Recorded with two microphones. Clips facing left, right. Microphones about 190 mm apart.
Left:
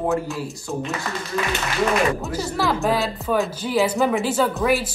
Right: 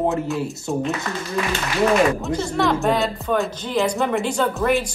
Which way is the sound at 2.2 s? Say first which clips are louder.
Right 3 dB; 5° left (ahead or behind).